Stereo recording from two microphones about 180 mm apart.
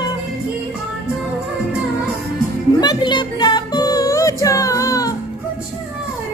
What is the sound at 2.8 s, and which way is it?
Music, 25° left (ahead or behind).